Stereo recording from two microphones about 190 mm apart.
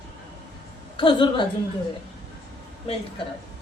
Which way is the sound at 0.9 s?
25° left (ahead or behind).